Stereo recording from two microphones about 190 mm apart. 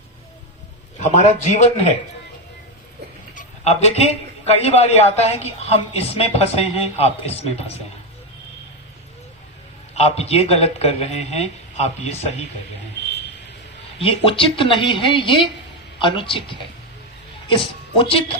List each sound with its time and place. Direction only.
0.9 s speech: 40° left (ahead or behind)
3.3 s speech: 35° left (ahead or behind)
9.9 s speech: 35° left (ahead or behind)
14.0 s speech: 30° left (ahead or behind)